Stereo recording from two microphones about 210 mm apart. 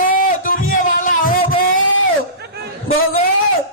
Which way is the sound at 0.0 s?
40° left (ahead or behind).